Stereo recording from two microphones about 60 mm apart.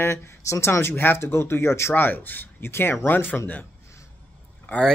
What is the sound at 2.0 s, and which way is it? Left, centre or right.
A man's voice, left.